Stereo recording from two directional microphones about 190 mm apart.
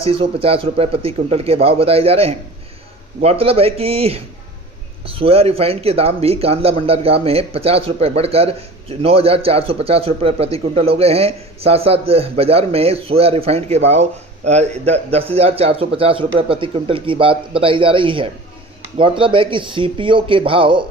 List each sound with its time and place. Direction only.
0.0 s a man's voice: 30° right (ahead or behind)